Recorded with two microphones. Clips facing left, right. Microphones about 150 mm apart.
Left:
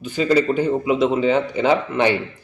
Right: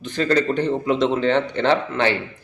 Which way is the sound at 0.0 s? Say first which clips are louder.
Left 2 dB; 10° left (ahead or behind).